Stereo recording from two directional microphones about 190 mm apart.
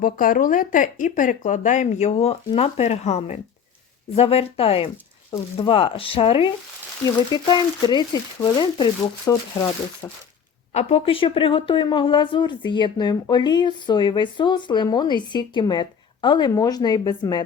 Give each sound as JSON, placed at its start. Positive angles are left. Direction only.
{"t": 0.0, "sound": "speech", "side_deg": 45}
{"t": 10.8, "sound": "speech", "side_deg": 30}